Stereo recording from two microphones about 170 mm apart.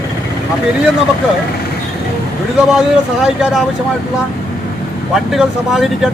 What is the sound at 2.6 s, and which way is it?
Speech, 5° right (ahead or behind).